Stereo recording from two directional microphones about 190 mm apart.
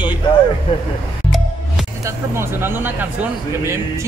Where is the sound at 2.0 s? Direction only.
15° right (ahead or behind).